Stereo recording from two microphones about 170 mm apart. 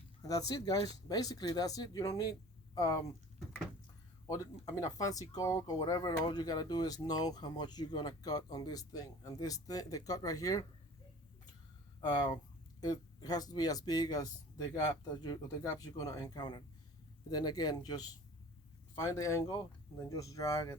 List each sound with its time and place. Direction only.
0.2 s speech: 20° left (ahead or behind)
4.3 s speech: 20° left (ahead or behind)
12.0 s speech: 25° left (ahead or behind)